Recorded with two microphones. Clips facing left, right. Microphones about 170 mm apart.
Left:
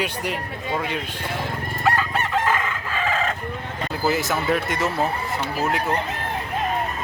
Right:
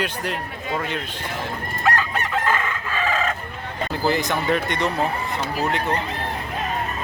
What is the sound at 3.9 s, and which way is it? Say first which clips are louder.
Speech: even; 5° left (ahead or behind).